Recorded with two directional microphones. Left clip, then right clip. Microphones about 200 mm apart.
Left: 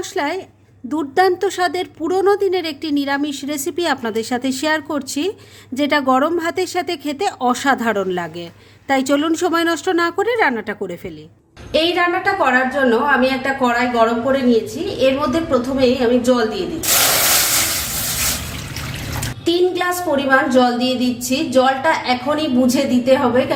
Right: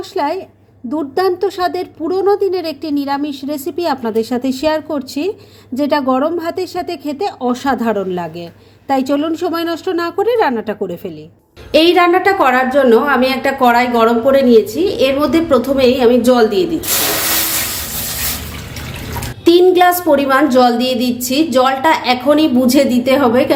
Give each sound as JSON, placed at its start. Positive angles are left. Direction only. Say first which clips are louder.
{"t": 0.1, "sound": "a woman's voice", "louder": "right 6 dB", "side_deg": 10}
{"t": 11.7, "sound": "a woman's voice", "louder": "right 6 dB", "side_deg": -40}
{"t": 19.5, "sound": "a woman's voice", "louder": "right 9 dB", "side_deg": -40}